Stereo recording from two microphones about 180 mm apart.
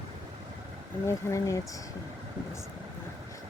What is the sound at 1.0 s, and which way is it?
Speech, 15° left (ahead or behind).